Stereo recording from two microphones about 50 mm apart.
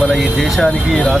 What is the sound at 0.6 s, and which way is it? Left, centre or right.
Speech, centre.